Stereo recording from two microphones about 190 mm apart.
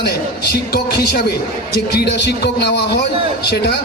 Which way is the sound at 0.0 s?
55° left (ahead or behind).